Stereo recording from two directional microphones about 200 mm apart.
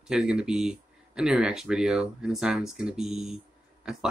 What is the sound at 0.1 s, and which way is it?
Speech, 5° right (ahead or behind).